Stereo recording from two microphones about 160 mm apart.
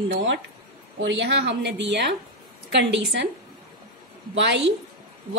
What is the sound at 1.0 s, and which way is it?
A woman's voice, 90° right.